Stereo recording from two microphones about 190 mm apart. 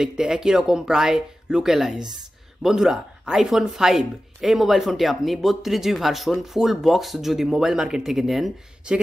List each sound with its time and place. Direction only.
0.0 s speech: 5° right (ahead or behind)